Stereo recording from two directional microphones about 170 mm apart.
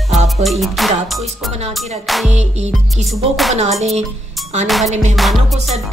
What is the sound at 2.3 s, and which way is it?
Speech, 40° right (ahead or behind).